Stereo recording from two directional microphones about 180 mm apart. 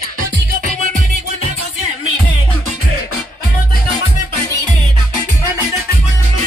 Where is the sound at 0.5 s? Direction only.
50° right (ahead or behind).